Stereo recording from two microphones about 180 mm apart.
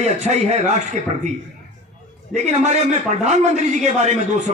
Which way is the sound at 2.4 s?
40° right (ahead or behind).